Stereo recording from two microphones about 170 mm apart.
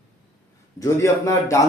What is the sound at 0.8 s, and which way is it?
Speech, 20° left (ahead or behind).